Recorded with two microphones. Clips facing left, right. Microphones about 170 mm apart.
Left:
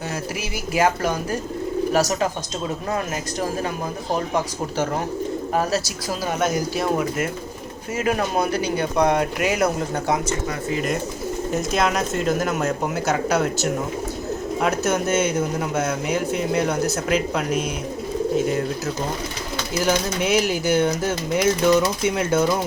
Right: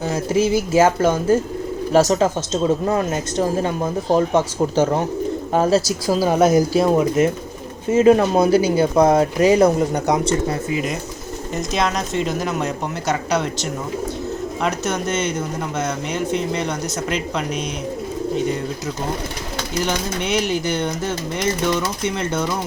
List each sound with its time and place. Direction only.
0.1 s speech: 25° right (ahead or behind)
6.1 s speech: 35° right (ahead or behind)
11.5 s speech: 5° left (ahead or behind)
19.8 s speech: 5° left (ahead or behind)